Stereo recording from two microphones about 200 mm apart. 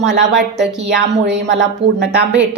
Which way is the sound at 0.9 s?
60° right (ahead or behind).